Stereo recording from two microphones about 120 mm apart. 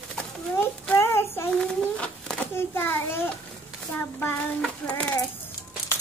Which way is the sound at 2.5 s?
20° left (ahead or behind).